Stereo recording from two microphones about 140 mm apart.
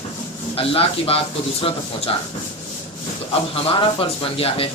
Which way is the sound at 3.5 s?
40° left (ahead or behind).